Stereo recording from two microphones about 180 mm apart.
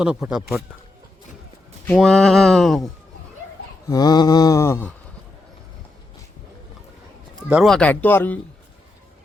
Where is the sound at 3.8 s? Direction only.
20° left (ahead or behind).